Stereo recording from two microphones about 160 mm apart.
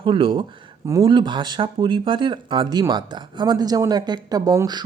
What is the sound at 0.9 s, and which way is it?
Speech, 25° right (ahead or behind).